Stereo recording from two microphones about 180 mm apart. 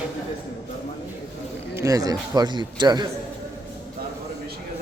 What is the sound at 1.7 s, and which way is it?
A man's voice, 20° right (ahead or behind).